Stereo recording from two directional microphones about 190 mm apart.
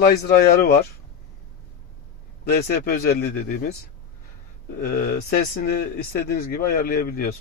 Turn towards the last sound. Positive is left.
turn(degrees=55)  # may be behind; listen again after turning